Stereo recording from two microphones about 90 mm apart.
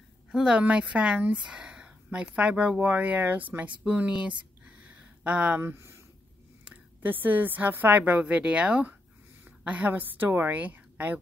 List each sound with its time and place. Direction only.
0.3 s speech: 10° right (ahead or behind)
4.6 s a sound: 15° right (ahead or behind)
5.6 s a woman's voice: 30° right (ahead or behind)
6.6 s a woman's voice: 20° right (ahead or behind)